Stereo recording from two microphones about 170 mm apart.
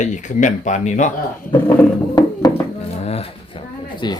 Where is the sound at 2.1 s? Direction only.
20° left (ahead or behind).